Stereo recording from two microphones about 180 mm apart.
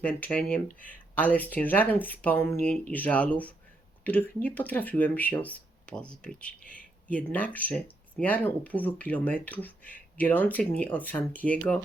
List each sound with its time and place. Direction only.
0.0 s speech: 10° left (ahead or behind)
0.7 s speech: 50° left (ahead or behind)
1.1 s speech: 10° left (ahead or behind)